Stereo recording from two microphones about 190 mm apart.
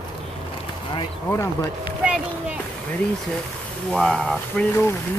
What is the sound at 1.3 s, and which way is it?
Speech, 15° left (ahead or behind).